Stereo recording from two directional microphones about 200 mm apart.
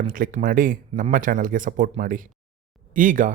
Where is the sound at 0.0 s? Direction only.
40° right (ahead or behind).